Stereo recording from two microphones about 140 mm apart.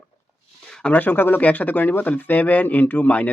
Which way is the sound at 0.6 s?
5° left (ahead or behind).